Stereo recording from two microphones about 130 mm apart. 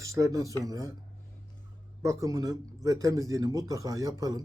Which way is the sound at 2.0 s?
25° right (ahead or behind).